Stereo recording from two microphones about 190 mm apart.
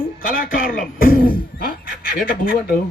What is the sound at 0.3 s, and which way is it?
A man's voice, 50° left (ahead or behind).